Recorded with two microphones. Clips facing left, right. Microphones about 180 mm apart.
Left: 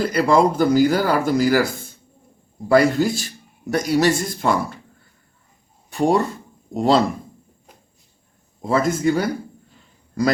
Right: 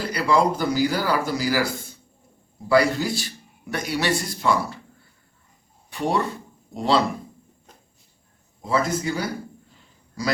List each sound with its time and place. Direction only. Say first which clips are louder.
0.1 s speech: left 2 dB; 50° left (ahead or behind)
2.6 s speech: left 4 dB; 45° left (ahead or behind)
5.9 s speech: left 6 dB; 45° left (ahead or behind)
8.6 s speech: left 5 dB; 50° left (ahead or behind)